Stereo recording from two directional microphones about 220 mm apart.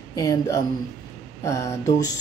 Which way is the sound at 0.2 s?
15° left (ahead or behind).